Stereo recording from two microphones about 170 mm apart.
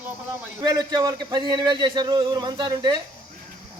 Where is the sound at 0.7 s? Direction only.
25° right (ahead or behind).